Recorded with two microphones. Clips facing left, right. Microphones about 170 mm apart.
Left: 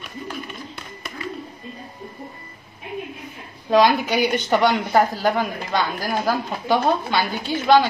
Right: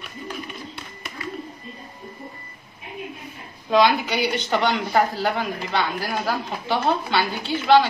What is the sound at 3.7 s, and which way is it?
Speech, 45° left (ahead or behind).